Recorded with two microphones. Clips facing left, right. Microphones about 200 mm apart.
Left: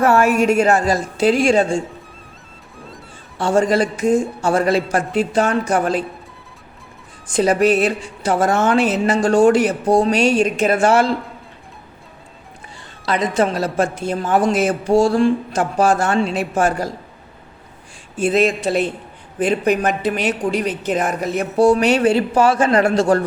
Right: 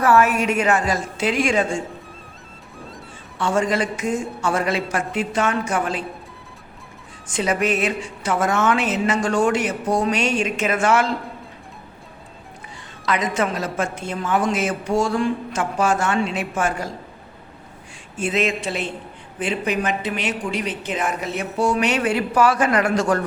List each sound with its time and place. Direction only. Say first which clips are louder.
0.0 s a woman's voice: left 2 dB; 25° left (ahead or behind)
0.4 s a woman's voice: left 5 dB; 40° left (ahead or behind)
2.7 s music: even; centre (ahead or behind)
3.3 s a woman's voice: left 5 dB; 35° left (ahead or behind)
7.3 s a woman's voice: left 6 dB; 35° left (ahead or behind)
13.1 s a woman's voice: left 4 dB; 30° left (ahead or behind)
18.2 s a woman's voice: left 6 dB; 35° left (ahead or behind)